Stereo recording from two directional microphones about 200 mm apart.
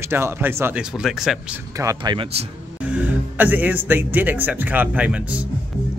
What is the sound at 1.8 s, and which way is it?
Speech, 20° right (ahead or behind).